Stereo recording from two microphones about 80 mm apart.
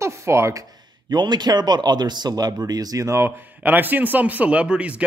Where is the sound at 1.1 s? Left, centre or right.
Right.